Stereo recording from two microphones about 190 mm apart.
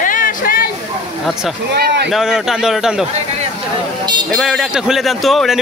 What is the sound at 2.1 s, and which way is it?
Speech, centre (ahead or behind).